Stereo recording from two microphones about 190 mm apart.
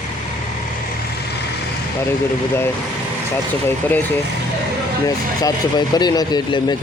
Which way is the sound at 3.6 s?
10° left (ahead or behind).